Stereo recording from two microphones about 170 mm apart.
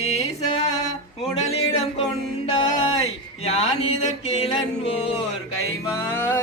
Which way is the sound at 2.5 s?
30° left (ahead or behind).